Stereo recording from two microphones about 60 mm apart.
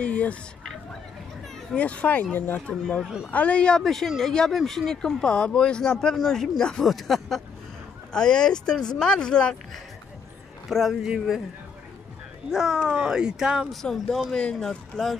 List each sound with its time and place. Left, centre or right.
0.0 s a sound: left
1.8 s speech: left
3.0 s speech: centre
3.3 s speech: left
3.8 s speech: centre
10.7 s speech: centre
12.4 s speech: centre
13.7 s speech: centre